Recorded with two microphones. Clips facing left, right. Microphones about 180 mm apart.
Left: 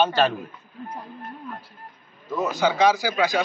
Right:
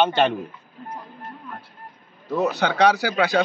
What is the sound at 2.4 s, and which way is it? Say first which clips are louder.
Speech: right 1 dB; 65° right (ahead or behind).